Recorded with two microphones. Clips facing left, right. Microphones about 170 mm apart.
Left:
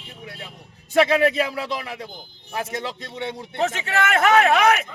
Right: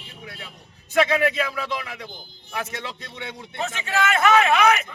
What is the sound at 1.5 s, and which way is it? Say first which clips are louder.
Speech: left 1 dB; 35° left (ahead or behind).